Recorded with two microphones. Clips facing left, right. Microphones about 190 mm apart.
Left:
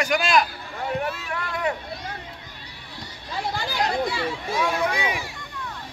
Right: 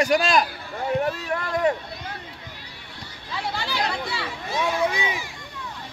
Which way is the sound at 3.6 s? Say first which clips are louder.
Left 6 dB; 45° left (ahead or behind).